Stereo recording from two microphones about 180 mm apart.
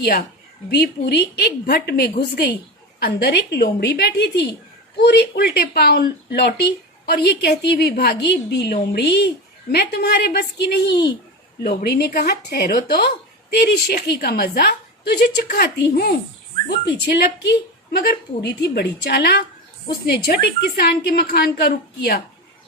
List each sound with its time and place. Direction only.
0.0 s speech: 55° left (ahead or behind)